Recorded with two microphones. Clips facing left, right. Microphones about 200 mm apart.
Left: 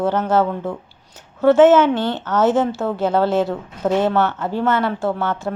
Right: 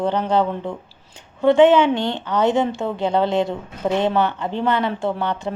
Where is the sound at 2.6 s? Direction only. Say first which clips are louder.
Left 2 dB; centre (ahead or behind).